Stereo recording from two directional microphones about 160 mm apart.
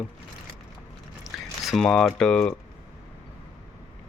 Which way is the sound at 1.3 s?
Centre (ahead or behind).